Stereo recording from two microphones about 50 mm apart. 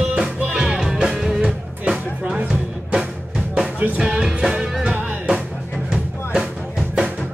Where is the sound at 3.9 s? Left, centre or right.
Centre.